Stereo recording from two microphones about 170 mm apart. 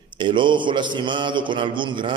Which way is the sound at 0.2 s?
30° right (ahead or behind).